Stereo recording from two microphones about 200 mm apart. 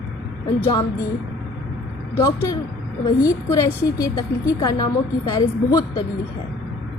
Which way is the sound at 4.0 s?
20° left (ahead or behind).